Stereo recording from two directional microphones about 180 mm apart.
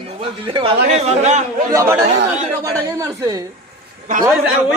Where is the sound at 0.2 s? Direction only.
30° right (ahead or behind).